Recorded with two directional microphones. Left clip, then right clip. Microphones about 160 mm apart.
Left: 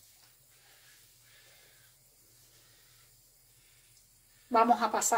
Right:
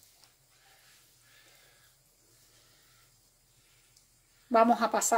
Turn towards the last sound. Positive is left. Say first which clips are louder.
# right 1 dB
turn(degrees=-55)  # may be behind; listen again after turning